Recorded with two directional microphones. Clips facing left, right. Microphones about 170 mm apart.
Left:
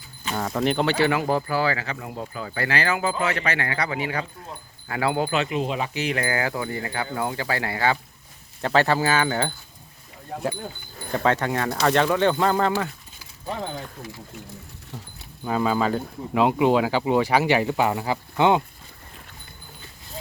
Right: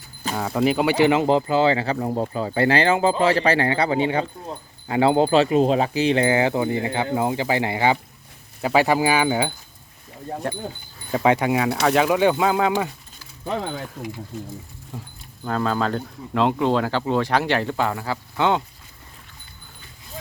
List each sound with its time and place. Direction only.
0.3 s speech: 5° right (ahead or behind)
11.1 s speech: 15° right (ahead or behind)
15.4 s speech: 5° left (ahead or behind)